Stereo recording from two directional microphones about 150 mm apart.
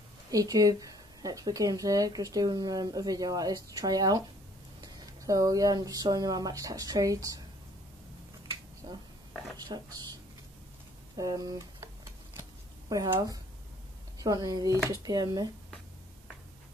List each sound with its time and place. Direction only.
0.3 s speech: 25° right (ahead or behind)
8.8 s a sound: 30° right (ahead or behind)
9.6 s speech: 25° right (ahead or behind)
11.1 s speech: 25° right (ahead or behind)
12.9 s speech: 25° right (ahead or behind)